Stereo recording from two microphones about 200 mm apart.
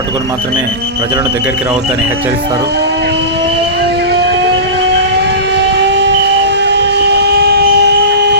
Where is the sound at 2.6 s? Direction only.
55° right (ahead or behind).